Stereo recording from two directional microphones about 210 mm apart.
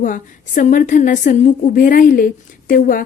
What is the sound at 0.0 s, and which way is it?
A woman's voice, 40° left (ahead or behind).